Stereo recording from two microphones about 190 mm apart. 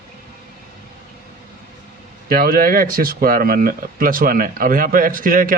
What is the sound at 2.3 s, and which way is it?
Speech, 50° right (ahead or behind).